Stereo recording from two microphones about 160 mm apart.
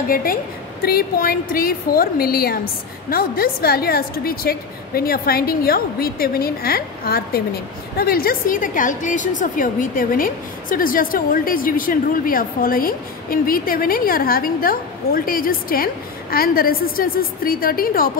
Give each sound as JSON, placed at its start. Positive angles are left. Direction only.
{"t": 0.1, "sound": "a woman's voice", "side_deg": 65}